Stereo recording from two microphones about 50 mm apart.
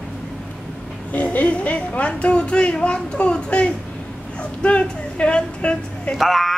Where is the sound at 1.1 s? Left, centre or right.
Left.